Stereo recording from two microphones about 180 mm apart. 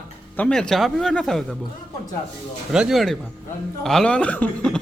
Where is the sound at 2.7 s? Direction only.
Centre (ahead or behind).